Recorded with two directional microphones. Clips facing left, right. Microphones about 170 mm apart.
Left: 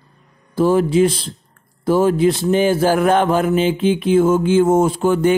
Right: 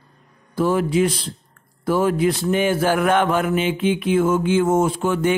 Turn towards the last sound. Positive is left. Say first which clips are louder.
# left 4 dB
turn(degrees=35)  # may be behind; listen again after turning